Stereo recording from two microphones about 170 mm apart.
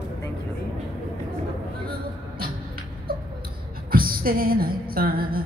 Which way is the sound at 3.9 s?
60° right (ahead or behind).